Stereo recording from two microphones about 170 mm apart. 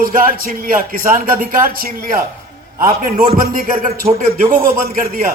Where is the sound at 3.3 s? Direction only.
55° right (ahead or behind).